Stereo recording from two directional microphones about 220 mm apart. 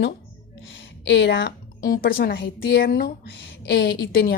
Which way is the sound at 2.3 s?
50° left (ahead or behind).